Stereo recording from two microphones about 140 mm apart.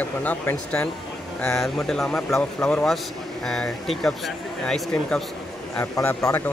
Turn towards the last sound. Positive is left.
turn(degrees=20)  # may be behind; listen again after turning